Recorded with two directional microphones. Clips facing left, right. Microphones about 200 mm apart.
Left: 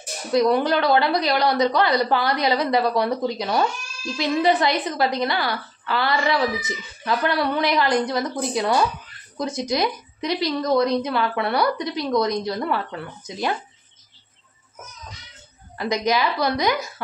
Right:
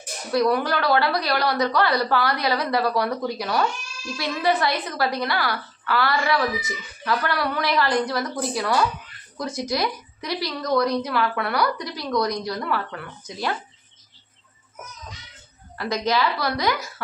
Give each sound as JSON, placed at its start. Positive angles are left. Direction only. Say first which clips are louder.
{"t": 0.3, "sound": "a woman's voice", "louder": "left 3 dB", "side_deg": 20}
{"t": 15.8, "sound": "a woman's voice", "louder": "left 1 dB", "side_deg": 15}